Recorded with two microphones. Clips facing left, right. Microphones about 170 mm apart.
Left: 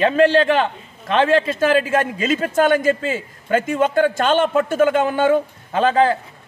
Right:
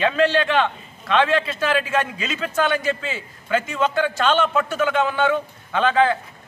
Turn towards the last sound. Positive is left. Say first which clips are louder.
# left 2 dB
turn(degrees=40)  # may be behind; listen again after turning